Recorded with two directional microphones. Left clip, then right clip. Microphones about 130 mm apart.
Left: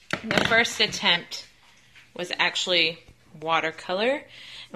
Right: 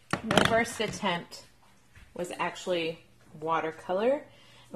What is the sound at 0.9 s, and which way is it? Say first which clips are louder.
A woman's voice: left 8 dB; 10° left (ahead or behind).